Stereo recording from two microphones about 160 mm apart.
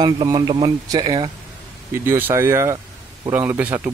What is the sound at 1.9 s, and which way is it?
Speech, 15° right (ahead or behind).